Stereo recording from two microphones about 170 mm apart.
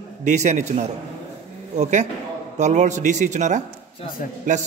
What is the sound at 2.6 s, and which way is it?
A man's voice, 45° right (ahead or behind).